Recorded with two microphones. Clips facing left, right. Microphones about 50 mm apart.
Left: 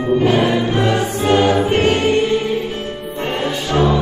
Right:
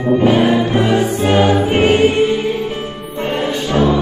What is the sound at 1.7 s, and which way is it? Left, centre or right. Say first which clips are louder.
Music: right 3 dB; centre.